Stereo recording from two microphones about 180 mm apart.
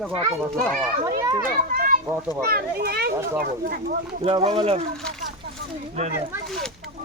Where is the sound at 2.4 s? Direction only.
60° right (ahead or behind).